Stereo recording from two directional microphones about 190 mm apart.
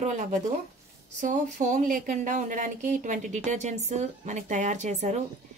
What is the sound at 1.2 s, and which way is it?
Speech, 40° right (ahead or behind).